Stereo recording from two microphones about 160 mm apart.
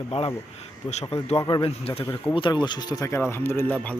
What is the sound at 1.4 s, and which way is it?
Speech, 30° left (ahead or behind).